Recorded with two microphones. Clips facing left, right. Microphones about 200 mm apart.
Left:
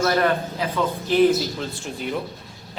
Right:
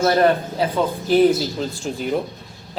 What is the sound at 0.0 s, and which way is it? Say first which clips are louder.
Speech: right 4 dB; 30° right (ahead or behind).